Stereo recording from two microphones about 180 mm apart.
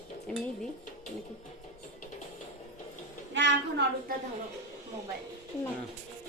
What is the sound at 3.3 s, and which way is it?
Speech, 80° right.